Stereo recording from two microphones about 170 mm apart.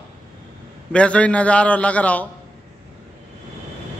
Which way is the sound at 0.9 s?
5° left (ahead or behind).